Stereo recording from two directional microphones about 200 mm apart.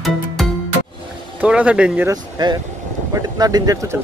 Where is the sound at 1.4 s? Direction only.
5° right (ahead or behind).